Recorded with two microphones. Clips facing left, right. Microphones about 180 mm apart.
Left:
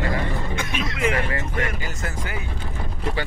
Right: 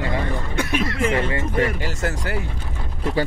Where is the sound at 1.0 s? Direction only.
25° right (ahead or behind).